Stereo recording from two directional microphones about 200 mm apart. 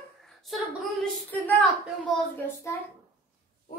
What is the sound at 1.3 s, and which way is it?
Speech, 10° left (ahead or behind).